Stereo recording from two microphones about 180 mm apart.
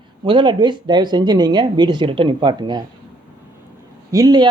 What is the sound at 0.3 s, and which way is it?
Speech, 25° right (ahead or behind).